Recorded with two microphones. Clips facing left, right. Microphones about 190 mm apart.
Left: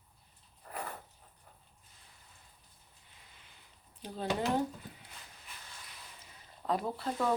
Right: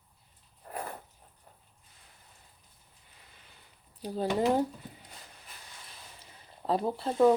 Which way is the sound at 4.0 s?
40° right (ahead or behind).